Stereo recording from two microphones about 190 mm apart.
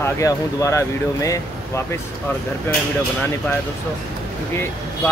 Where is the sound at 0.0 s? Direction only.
15° left (ahead or behind).